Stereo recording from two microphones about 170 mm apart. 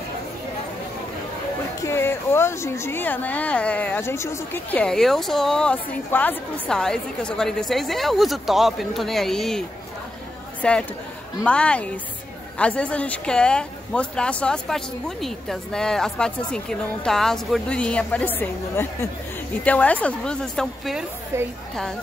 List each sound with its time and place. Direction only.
1.8 s a woman's voice: 15° left (ahead or behind)
21.3 s a woman's voice: 15° right (ahead or behind)